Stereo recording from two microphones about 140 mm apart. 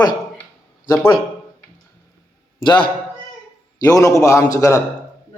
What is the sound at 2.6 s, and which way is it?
A man's voice, 35° left (ahead or behind).